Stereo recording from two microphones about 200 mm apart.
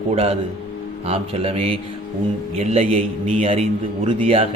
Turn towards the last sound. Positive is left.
turn(degrees=-30)  # may be behind; listen again after turning